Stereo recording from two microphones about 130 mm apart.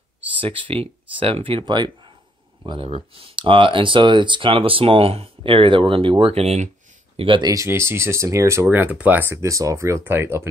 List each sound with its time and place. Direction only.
0.4 s speech: 45° right (ahead or behind)
2.9 s speech: 45° right (ahead or behind)
7.2 s speech: 40° right (ahead or behind)
7.5 s speech: 20° right (ahead or behind)